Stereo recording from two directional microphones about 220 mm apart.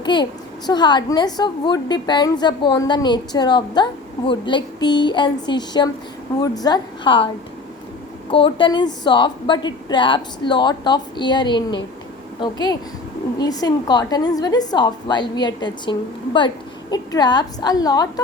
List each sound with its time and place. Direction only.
0.0 s a woman's voice: 20° left (ahead or behind)
8.3 s a woman's voice: 25° left (ahead or behind)